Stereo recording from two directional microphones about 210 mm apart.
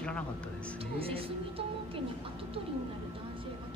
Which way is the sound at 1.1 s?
25° right (ahead or behind).